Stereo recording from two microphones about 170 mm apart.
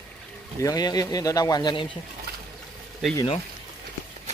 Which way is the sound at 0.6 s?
20° left (ahead or behind).